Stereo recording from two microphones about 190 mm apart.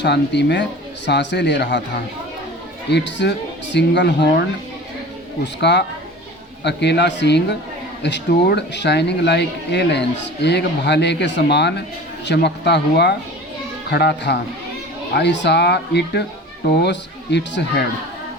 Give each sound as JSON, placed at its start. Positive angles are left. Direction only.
{"t": 0.0, "sound": "speech", "side_deg": 65}
{"t": 2.9, "sound": "speech", "side_deg": 65}